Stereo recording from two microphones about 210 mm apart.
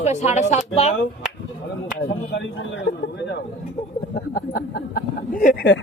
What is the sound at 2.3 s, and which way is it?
Speech, 65° left (ahead or behind).